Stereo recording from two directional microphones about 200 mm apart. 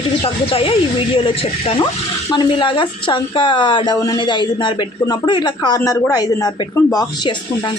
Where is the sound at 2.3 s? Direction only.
25° left (ahead or behind).